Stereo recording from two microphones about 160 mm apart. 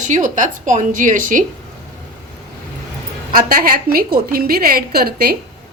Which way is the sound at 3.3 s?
65° right (ahead or behind).